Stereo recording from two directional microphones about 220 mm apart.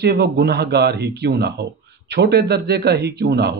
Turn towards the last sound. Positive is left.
turn(degrees=-50)  # may be behind; listen again after turning